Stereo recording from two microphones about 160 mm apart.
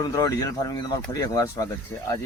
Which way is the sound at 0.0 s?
20° left (ahead or behind).